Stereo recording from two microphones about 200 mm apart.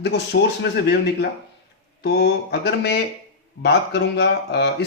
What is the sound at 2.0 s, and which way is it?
Speech, 55° left (ahead or behind).